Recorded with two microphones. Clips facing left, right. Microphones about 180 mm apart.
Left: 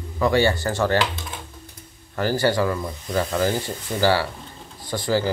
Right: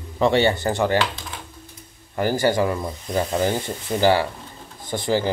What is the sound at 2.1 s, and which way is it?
Speech, 15° right (ahead or behind).